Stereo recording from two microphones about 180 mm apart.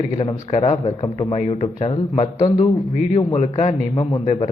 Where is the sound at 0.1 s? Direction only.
35° left (ahead or behind).